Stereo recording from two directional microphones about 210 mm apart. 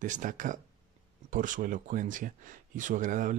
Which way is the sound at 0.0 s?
35° right (ahead or behind).